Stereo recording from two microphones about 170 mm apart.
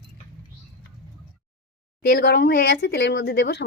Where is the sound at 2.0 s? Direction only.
70° left (ahead or behind).